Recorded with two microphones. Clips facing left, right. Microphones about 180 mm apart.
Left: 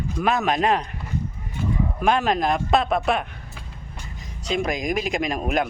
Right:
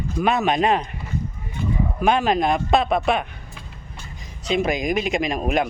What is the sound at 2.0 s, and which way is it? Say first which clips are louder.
Speech: right 2 dB; centre (ahead or behind).